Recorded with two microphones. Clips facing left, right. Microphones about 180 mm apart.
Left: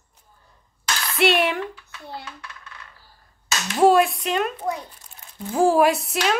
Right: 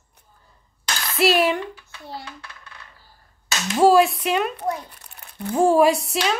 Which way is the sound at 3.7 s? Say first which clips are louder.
Right 1 dB; centre (ahead or behind).